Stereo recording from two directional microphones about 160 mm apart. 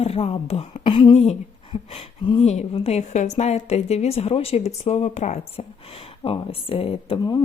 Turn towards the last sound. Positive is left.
turn(degrees=35)  # may be behind; listen again after turning